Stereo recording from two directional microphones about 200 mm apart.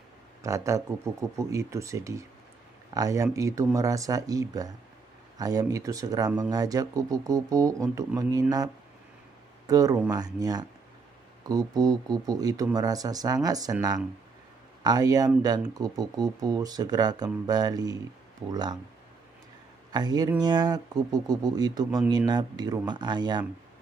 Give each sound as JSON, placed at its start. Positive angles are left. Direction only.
{"t": 0.4, "sound": "speech", "side_deg": -15}
{"t": 9.7, "sound": "speech", "side_deg": -15}
{"t": 19.9, "sound": "speech", "side_deg": -20}